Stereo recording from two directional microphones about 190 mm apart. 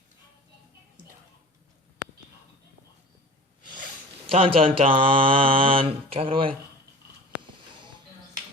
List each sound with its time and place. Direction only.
4.3 s speech: 30° right (ahead or behind)